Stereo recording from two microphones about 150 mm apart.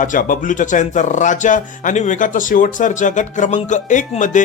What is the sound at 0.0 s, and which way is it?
Speech, 60° left (ahead or behind).